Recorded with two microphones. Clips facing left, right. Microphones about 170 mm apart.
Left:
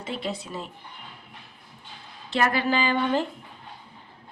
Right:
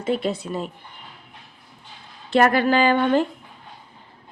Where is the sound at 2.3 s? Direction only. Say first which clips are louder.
Right 6 dB; 55° right (ahead or behind).